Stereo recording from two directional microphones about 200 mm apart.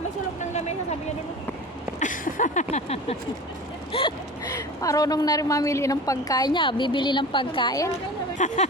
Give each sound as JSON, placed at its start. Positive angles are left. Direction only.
{"t": 2.0, "sound": "a sound", "side_deg": 40}
{"t": 4.8, "sound": "a woman's voice", "side_deg": 15}
{"t": 8.4, "sound": "speech", "side_deg": 35}